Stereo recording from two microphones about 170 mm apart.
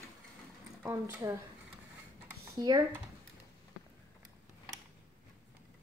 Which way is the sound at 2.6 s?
25° right (ahead or behind).